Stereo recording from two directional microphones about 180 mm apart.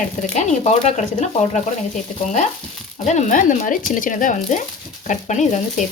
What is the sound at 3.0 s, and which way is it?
Speech, 45° left (ahead or behind).